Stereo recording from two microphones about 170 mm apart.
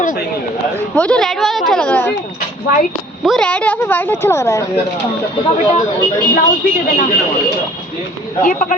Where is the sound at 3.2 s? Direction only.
5° left (ahead or behind).